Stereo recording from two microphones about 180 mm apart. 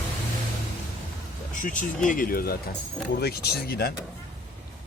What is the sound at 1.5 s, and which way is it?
Speech, 45° left (ahead or behind).